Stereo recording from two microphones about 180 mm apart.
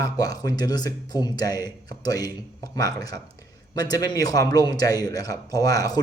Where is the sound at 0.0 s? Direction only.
20° left (ahead or behind).